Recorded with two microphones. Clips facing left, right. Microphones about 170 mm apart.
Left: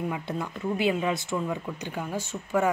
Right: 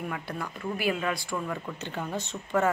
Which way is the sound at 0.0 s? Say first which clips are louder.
Left 4 dB; 25° left (ahead or behind).